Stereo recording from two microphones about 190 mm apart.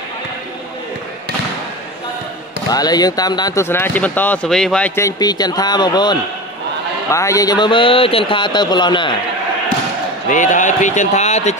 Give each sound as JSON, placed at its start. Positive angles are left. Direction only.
{"t": 2.7, "sound": "speech", "side_deg": 20}
{"t": 10.3, "sound": "a man's voice", "side_deg": 40}